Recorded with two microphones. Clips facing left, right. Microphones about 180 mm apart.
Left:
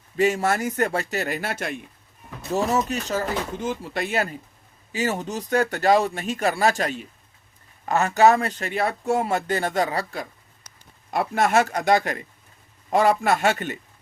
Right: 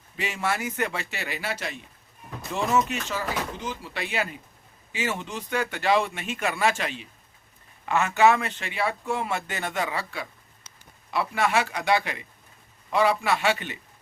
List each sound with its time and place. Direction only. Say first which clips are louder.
0.2 s speech: left 8 dB; 45° left (ahead or behind)
2.5 s speech: left 2 dB; 40° left (ahead or behind)